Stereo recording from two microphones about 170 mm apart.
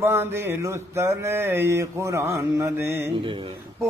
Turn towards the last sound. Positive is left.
turn(degrees=-30)  # may be behind; listen again after turning